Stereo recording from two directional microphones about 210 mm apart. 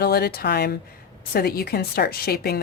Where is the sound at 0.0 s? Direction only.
50° left (ahead or behind).